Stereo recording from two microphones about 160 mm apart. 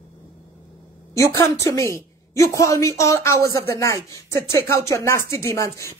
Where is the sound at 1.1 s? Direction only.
20° left (ahead or behind).